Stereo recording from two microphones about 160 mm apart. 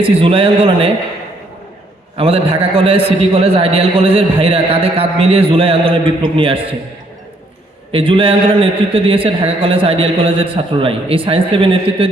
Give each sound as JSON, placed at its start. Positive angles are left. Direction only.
{"t": 0.0, "sound": "a man's voice", "side_deg": -35}
{"t": 2.1, "sound": "a man's voice", "side_deg": -35}
{"t": 7.9, "sound": "a man's voice", "side_deg": -35}